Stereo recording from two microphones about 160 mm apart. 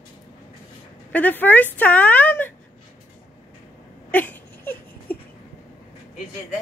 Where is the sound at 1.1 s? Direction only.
10° left (ahead or behind).